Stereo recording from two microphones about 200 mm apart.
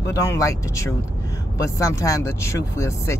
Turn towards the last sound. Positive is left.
turn(degrees=15)  # may be behind; listen again after turning